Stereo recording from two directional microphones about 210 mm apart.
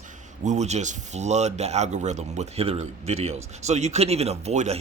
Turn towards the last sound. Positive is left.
turn(degrees=-30)  # may be behind; listen again after turning